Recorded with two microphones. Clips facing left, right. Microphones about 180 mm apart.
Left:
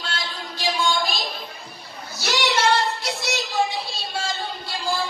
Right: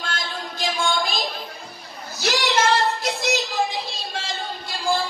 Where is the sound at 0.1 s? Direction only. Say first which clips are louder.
Right 1 dB; 50° right (ahead or behind).